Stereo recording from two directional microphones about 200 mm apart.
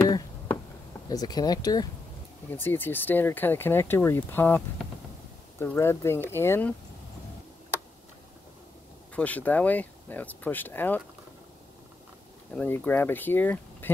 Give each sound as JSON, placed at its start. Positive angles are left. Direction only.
{"t": 1.0, "sound": "speech", "side_deg": 20}
{"t": 9.1, "sound": "speech", "side_deg": 5}
{"t": 12.5, "sound": "speech", "side_deg": 10}